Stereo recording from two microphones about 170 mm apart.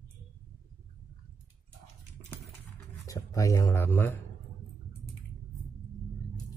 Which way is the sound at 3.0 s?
20° left (ahead or behind).